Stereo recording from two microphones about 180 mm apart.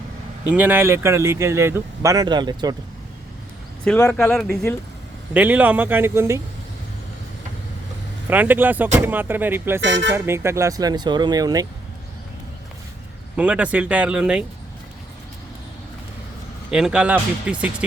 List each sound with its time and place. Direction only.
0.4 s speech: 10° right (ahead or behind)
3.8 s speech: 10° left (ahead or behind)
5.3 s speech: 10° right (ahead or behind)
8.3 s speech: 10° right (ahead or behind)
9.8 s speech: 90° right
10.1 s speech: 15° right (ahead or behind)
13.3 s speech: 5° right (ahead or behind)
16.7 s speech: 5° right (ahead or behind)